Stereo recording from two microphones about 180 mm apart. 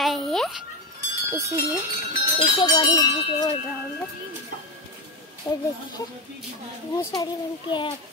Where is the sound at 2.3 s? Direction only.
25° left (ahead or behind).